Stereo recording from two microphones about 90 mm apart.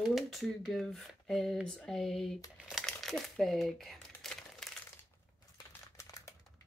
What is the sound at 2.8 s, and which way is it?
Speech, 5° left (ahead or behind).